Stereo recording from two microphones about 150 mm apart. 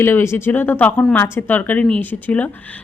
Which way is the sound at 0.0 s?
15° left (ahead or behind).